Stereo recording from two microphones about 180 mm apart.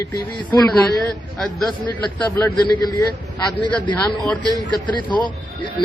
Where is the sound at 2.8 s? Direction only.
15° left (ahead or behind).